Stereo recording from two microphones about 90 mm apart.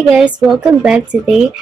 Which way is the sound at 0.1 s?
10° right (ahead or behind).